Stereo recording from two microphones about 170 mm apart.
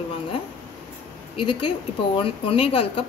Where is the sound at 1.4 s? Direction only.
30° left (ahead or behind).